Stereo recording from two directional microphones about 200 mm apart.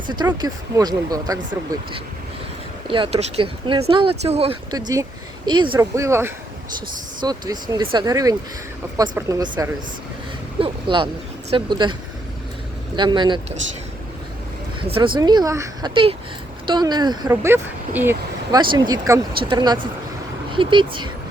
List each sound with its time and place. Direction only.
0.3 s speech: 20° right (ahead or behind)
2.8 s speech: 25° right (ahead or behind)
6.1 s speech: 10° right (ahead or behind)
13.0 s speech: 20° right (ahead or behind)
14.8 s speech: 25° right (ahead or behind); by 18.6 s 10° right (ahead or behind)
18.6 s speech: 25° right (ahead or behind)